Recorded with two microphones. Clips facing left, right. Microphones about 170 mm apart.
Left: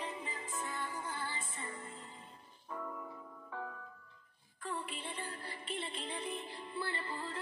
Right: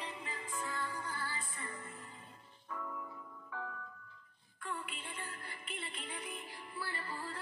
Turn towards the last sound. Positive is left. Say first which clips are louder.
# left 2 dB
turn(degrees=20)  # may be behind; listen again after turning